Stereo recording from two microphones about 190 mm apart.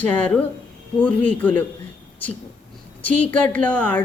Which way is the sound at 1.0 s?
5° left (ahead or behind).